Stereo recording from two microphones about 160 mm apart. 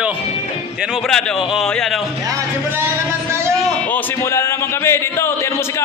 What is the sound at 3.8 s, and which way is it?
A man's voice, 10° left (ahead or behind).